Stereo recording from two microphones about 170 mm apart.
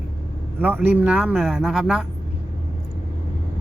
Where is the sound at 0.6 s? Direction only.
10° right (ahead or behind).